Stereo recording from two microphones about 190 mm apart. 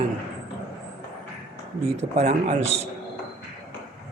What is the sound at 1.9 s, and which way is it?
Speech, 35° right (ahead or behind).